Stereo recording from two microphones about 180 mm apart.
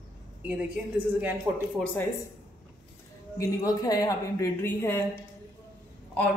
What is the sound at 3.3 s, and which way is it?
A woman's voice, 20° left (ahead or behind).